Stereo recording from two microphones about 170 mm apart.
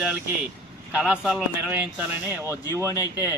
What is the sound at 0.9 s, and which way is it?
Speech, 5° right (ahead or behind).